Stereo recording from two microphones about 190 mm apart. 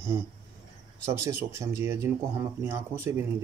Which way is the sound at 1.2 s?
15° right (ahead or behind).